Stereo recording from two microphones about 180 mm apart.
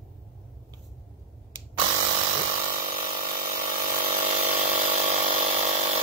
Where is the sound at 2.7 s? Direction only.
50° right (ahead or behind).